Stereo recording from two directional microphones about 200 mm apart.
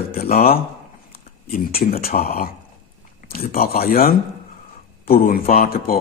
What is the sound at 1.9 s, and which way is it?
A man's voice, 50° left (ahead or behind).